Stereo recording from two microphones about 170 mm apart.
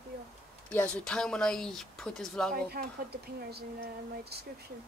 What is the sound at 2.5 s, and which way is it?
Speech, 65° right (ahead or behind).